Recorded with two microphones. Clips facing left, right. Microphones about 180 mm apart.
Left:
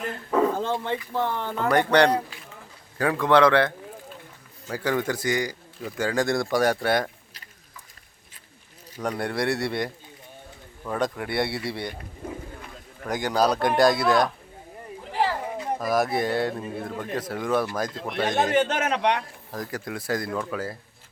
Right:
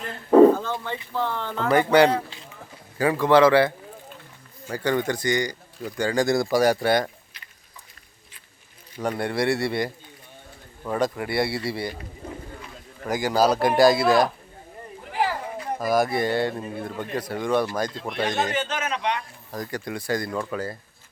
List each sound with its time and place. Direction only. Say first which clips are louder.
0.3 s bow-wow: right 10 dB; 35° right (ahead or behind)
0.6 s speech: left 3 dB; 25° left (ahead or behind)
1.7 s speech: right 2 dB; 5° right (ahead or behind)
4.7 s speech: right 2 dB; 5° left (ahead or behind)
9.0 s speech: right 2 dB; centre (ahead or behind)
13.1 s speech: right 2 dB; centre (ahead or behind)
15.8 s speech: right 2 dB; centre (ahead or behind)
18.5 s speech: left 5 dB; 60° left (ahead or behind)
19.5 s speech: right 3 dB; centre (ahead or behind)